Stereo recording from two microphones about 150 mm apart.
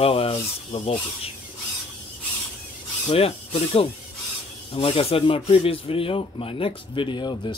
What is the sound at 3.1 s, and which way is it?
Speech, 40° left (ahead or behind).